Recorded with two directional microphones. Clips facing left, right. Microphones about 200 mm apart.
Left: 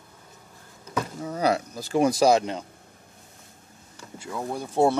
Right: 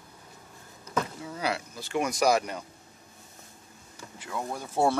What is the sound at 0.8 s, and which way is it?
Speech, 40° left (ahead or behind).